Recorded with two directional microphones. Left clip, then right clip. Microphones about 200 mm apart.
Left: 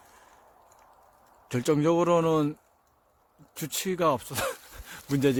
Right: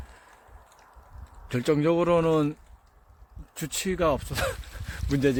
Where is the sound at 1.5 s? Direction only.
10° left (ahead or behind).